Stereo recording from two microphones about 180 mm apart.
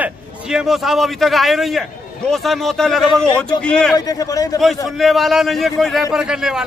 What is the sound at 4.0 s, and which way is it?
Speech, 20° left (ahead or behind).